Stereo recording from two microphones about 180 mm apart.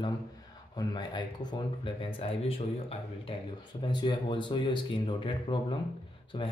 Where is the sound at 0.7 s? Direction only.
25° left (ahead or behind).